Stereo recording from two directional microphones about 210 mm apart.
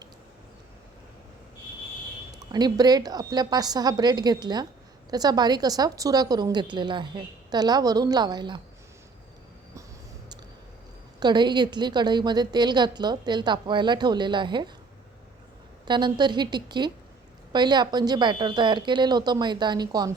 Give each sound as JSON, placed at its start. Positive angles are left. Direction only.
{"t": 2.4, "sound": "a woman's voice", "side_deg": -20}
{"t": 11.2, "sound": "a woman's voice", "side_deg": -20}
{"t": 15.9, "sound": "a woman's voice", "side_deg": -20}